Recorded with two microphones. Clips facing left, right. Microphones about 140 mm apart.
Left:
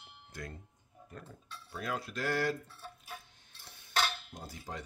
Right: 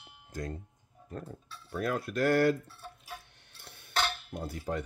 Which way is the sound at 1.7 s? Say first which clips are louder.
Right 6 dB; 50° right (ahead or behind).